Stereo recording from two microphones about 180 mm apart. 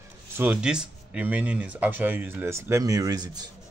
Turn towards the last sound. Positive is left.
turn(degrees=-20)  # may be behind; listen again after turning